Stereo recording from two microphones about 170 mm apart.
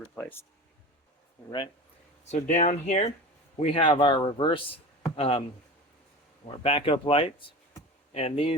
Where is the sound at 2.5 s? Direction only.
45° left (ahead or behind).